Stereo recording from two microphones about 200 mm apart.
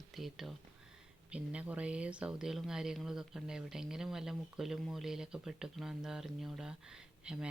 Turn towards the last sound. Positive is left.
turn(degrees=-5)  # may be behind; listen again after turning